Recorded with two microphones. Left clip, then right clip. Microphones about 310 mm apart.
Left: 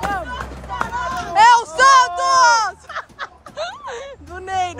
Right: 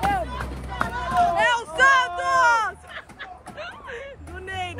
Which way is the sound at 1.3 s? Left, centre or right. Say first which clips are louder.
Left 10 dB; centre.